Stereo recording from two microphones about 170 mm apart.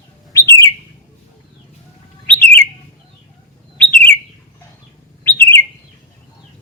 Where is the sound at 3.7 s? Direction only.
10° left (ahead or behind).